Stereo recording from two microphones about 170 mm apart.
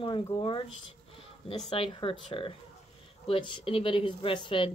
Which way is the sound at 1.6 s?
35° left (ahead or behind).